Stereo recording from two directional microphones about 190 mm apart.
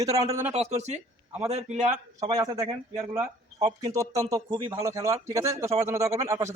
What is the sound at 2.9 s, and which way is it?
Speech, 35° right (ahead or behind).